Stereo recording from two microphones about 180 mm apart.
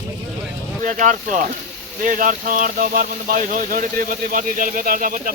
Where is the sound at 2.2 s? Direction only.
50° right (ahead or behind).